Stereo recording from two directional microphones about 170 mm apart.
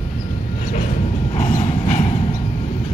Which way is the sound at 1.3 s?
40° left (ahead or behind).